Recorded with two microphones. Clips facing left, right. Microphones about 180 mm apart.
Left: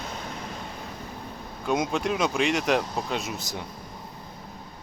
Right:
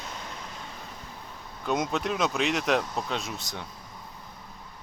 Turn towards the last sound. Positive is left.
turn(degrees=5)  # may be behind; listen again after turning